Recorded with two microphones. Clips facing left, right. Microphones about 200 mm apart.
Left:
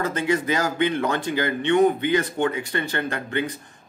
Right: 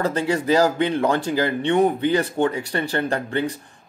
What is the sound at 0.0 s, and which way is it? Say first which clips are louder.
Speech: right 1 dB; 35° right (ahead or behind).